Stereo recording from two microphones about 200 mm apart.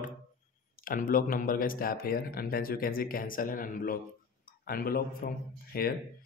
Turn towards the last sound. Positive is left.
turn(degrees=50)  # may be behind; listen again after turning